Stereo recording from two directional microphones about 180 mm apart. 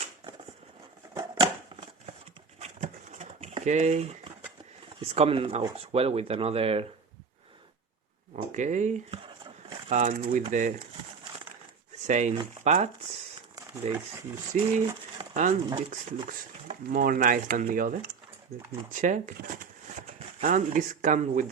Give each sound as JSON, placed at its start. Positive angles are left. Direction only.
{"t": 1.1, "sound": "typewriter", "side_deg": -20}
{"t": 2.6, "sound": "a sound", "side_deg": -40}
{"t": 4.9, "sound": "speech", "side_deg": -30}
{"t": 8.4, "sound": "a sound", "side_deg": -40}
{"t": 9.9, "sound": "speech", "side_deg": -45}
{"t": 12.0, "sound": "speech", "side_deg": -40}
{"t": 14.8, "sound": "pigeon", "side_deg": -25}
{"t": 16.6, "sound": "speech", "side_deg": -50}